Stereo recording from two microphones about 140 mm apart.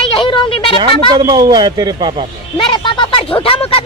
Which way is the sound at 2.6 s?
35° left (ahead or behind).